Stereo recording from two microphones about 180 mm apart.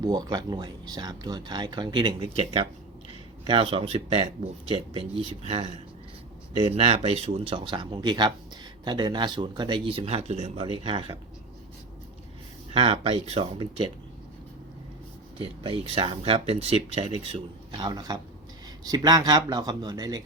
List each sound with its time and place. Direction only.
0.0 s speech: 20° right (ahead or behind)
12.7 s speech: 30° right (ahead or behind)
15.4 s speech: 30° right (ahead or behind)